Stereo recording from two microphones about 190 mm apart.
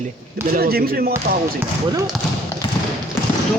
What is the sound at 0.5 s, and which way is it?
Speech, 50° right (ahead or behind).